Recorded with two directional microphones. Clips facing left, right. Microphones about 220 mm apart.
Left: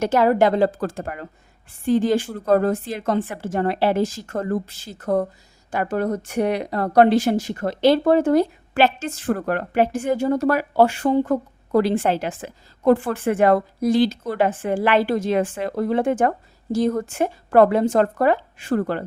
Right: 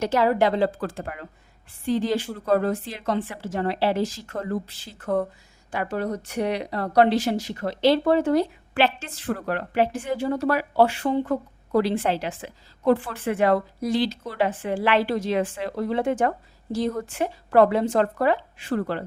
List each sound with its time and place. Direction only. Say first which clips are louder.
0.0 s speech: left 4 dB; 50° left (ahead or behind)